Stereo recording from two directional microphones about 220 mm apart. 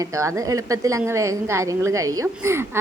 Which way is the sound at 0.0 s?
15° right (ahead or behind).